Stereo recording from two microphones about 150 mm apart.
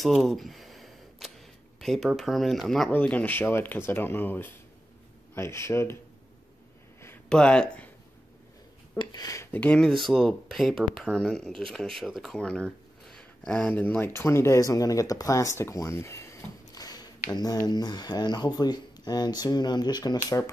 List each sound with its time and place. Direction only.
0.0 s a sound: centre (ahead or behind)
1.8 s speech: centre (ahead or behind); by 5.9 s 15° left (ahead or behind)
7.2 s speech: 5° left (ahead or behind)
8.9 s speech: 30° left (ahead or behind)